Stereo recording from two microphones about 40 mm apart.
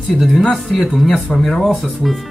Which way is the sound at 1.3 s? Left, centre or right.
Centre.